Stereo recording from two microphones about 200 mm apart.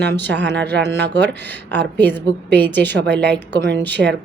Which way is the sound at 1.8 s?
10° left (ahead or behind).